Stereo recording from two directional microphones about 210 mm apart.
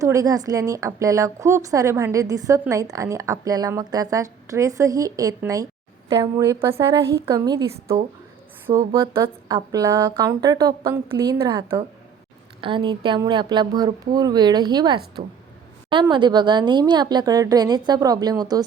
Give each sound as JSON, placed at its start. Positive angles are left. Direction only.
{"t": 0.0, "sound": "a woman's voice", "side_deg": -15}